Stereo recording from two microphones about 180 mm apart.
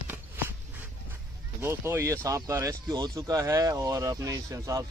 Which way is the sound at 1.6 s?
15° right (ahead or behind).